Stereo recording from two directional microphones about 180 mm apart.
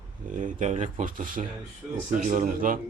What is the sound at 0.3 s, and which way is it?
Speech, 45° right (ahead or behind).